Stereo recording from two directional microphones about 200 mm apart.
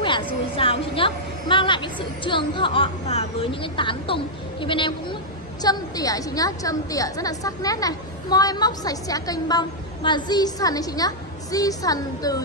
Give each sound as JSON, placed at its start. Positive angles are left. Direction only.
{"t": 0.0, "sound": "a woman's voice", "side_deg": 25}